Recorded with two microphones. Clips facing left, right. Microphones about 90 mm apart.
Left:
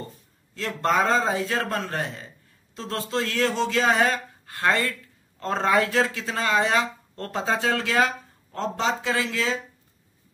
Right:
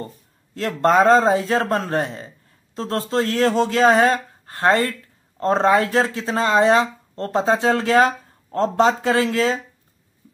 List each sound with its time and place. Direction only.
0.6 s speech: 40° right (ahead or behind)